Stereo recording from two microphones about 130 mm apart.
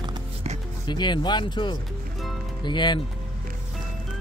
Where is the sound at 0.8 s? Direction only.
35° left (ahead or behind).